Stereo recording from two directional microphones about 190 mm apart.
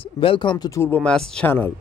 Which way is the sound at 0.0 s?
30° left (ahead or behind).